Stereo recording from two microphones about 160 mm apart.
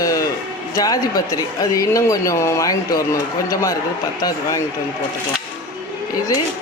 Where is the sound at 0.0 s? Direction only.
20° left (ahead or behind).